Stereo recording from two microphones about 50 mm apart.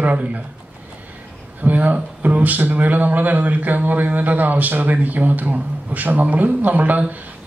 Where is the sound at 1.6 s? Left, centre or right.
Right.